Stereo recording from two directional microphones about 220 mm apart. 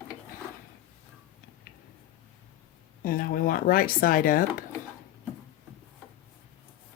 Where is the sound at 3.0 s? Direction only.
40° left (ahead or behind).